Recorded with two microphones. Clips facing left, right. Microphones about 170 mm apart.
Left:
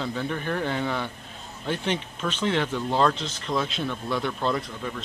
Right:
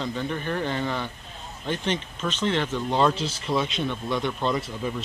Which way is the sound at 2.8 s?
Centre (ahead or behind).